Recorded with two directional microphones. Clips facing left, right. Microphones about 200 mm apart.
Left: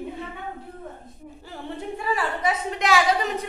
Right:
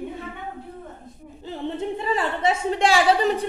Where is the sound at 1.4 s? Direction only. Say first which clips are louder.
Right 6 dB; 20° right (ahead or behind).